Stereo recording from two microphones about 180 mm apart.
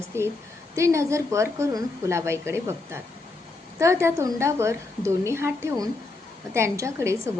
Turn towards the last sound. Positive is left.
turn(degrees=-15)  # may be behind; listen again after turning